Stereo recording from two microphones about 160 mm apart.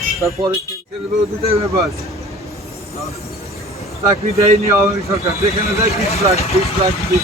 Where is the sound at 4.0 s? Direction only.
20° right (ahead or behind).